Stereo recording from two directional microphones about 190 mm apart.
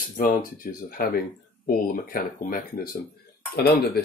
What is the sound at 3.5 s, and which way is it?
Speech, 55° left (ahead or behind).